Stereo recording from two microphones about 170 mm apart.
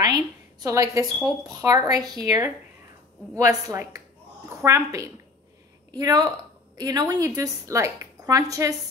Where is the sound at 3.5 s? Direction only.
20° right (ahead or behind).